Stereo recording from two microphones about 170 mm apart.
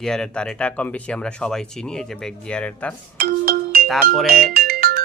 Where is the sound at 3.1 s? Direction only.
60° right (ahead or behind).